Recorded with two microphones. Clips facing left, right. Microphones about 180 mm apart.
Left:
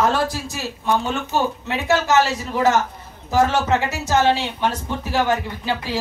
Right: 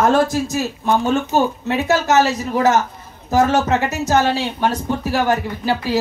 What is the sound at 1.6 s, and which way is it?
Speech, 45° right (ahead or behind).